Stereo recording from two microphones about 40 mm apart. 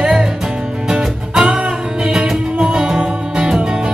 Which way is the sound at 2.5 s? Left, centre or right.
Right.